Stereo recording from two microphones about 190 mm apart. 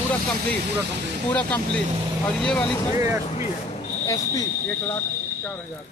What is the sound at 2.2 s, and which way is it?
Speech, 5° left (ahead or behind).